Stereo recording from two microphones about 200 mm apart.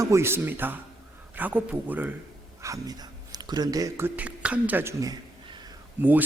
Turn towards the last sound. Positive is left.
turn(degrees=-10)  # may be behind; listen again after turning